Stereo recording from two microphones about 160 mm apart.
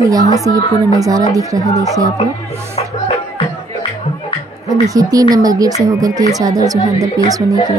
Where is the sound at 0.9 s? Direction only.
20° right (ahead or behind).